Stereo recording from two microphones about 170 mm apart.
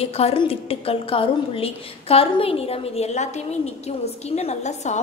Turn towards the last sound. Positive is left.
turn(degrees=45)  # may be behind; listen again after turning